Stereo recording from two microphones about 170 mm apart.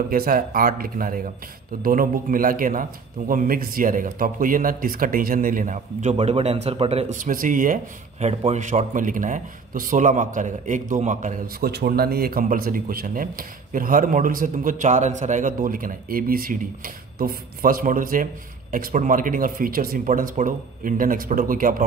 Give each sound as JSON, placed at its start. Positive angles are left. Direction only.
{"t": 0.1, "sound": "speech", "side_deg": -55}
{"t": 6.1, "sound": "speech", "side_deg": -35}